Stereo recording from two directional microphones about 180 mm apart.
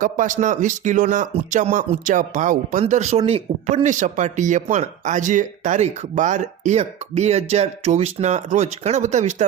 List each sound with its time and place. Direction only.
0.0 s speech: 45° right (ahead or behind)